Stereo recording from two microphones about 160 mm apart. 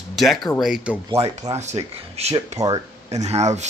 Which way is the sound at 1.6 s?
45° right (ahead or behind).